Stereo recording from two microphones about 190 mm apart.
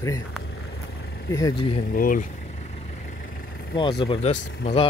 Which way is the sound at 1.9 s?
45° left (ahead or behind).